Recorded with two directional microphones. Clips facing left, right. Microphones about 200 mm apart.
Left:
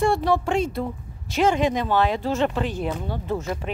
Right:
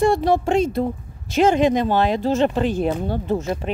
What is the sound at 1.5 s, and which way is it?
Speech, 25° right (ahead or behind).